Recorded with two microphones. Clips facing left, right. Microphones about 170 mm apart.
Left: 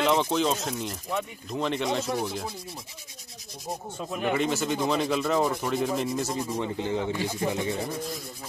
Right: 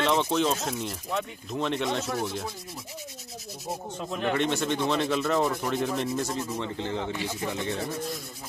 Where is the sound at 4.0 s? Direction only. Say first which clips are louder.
Left 1 dB; 5° left (ahead or behind).